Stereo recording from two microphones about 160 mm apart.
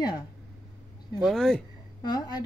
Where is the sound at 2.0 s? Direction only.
25° left (ahead or behind).